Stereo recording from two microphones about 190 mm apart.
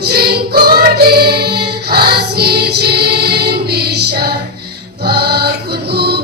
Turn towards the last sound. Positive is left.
turn(degrees=-55)  # may be behind; listen again after turning